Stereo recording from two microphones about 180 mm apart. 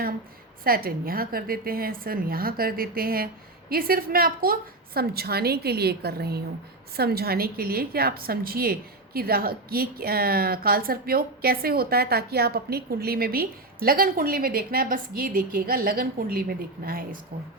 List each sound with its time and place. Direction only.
0.6 s a woman's voice: 55° right (ahead or behind)